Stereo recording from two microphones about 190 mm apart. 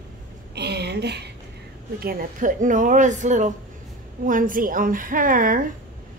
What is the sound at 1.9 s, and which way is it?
A woman's voice, 45° right (ahead or behind).